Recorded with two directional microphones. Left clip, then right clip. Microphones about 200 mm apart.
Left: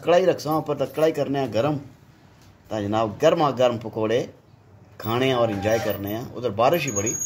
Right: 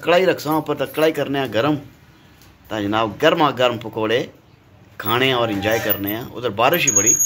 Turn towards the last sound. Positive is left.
turn(degrees=5)  # may be behind; listen again after turning